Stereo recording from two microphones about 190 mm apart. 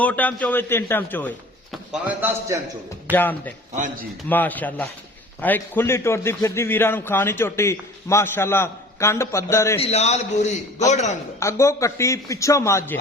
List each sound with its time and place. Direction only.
0.0 s a man's voice: 10° left (ahead or behind)
1.7 s a man's voice: 5° right (ahead or behind)
3.1 s a man's voice: 10° left (ahead or behind)
9.8 s a man's voice: 35° left (ahead or behind)
11.3 s a man's voice: 15° left (ahead or behind)